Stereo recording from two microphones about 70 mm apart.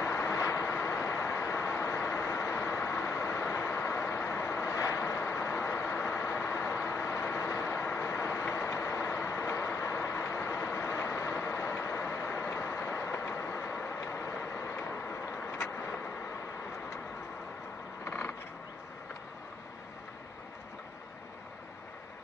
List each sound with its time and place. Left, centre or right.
0.0 s vehicle: left
0.4 s vehicle: left
0.7 s vehicle: left
18.0 s vehicle: left